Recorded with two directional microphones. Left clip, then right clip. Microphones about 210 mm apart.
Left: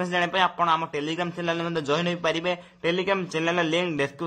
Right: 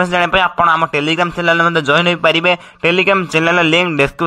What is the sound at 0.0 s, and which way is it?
A man's voice, 20° right (ahead or behind).